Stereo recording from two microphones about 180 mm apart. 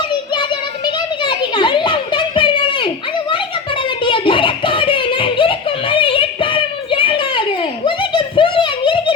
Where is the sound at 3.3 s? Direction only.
30° left (ahead or behind).